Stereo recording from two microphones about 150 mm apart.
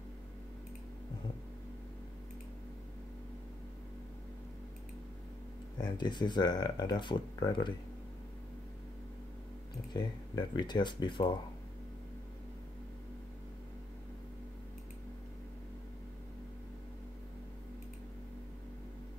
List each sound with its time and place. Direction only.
5.8 s speech: 30° left (ahead or behind)
9.9 s speech: 30° left (ahead or behind)